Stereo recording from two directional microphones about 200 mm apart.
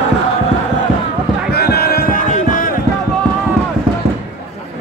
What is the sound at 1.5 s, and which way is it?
Music, 50° left (ahead or behind).